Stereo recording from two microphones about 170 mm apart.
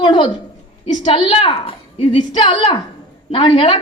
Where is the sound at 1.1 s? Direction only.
30° left (ahead or behind).